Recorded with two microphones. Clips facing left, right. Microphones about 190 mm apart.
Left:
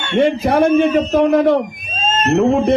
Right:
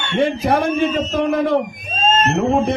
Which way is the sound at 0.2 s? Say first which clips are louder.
Left 4 dB; 55° left (ahead or behind).